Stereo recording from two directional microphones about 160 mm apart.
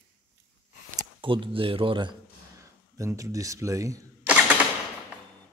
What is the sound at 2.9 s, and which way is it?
A man's voice, 20° right (ahead or behind).